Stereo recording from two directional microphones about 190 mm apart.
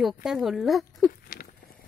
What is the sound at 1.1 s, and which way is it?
Patter, 50° left (ahead or behind).